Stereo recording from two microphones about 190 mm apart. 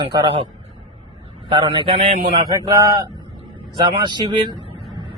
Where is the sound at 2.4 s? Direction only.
20° right (ahead or behind).